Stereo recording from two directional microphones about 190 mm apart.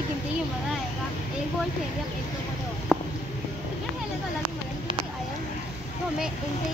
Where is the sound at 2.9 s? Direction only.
5° right (ahead or behind).